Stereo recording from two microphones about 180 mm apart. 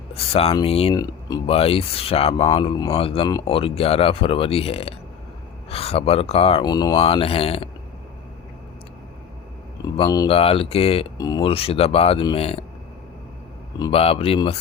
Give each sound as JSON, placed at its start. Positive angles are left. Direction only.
{"t": 0.1, "sound": "speech", "side_deg": 35}
{"t": 0.9, "sound": "speech", "side_deg": 20}
{"t": 1.5, "sound": "speech", "side_deg": 35}
{"t": 10.2, "sound": "speech", "side_deg": 30}
{"t": 13.7, "sound": "speech", "side_deg": 20}
{"t": 14.0, "sound": "speech", "side_deg": 35}